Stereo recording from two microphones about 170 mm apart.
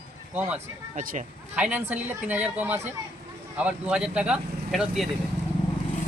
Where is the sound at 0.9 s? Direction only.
50° right (ahead or behind).